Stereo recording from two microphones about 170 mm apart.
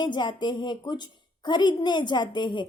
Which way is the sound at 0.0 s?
25° left (ahead or behind).